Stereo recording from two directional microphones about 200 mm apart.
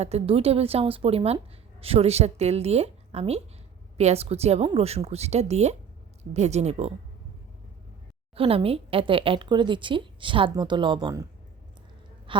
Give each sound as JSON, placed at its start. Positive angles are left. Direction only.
{"t": 0.0, "sound": "a woman's voice", "side_deg": -30}
{"t": 8.4, "sound": "speech", "side_deg": -30}
{"t": 12.3, "sound": "a woman's voice", "side_deg": -25}